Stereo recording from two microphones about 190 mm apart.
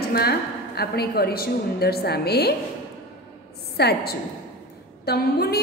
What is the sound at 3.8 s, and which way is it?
A woman's voice, 55° left (ahead or behind).